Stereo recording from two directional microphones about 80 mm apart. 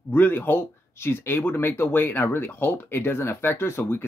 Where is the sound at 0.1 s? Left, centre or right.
Left.